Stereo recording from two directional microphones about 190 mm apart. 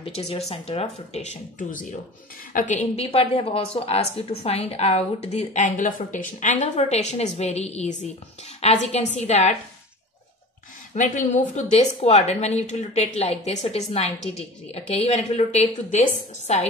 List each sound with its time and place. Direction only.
0.0 s a woman's voice: 30° left (ahead or behind)
11.0 s a woman's voice: 40° left (ahead or behind)